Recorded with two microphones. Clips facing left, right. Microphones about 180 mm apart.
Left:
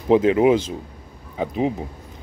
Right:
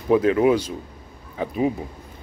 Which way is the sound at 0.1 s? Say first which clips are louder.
Left 2 dB; 25° left (ahead or behind).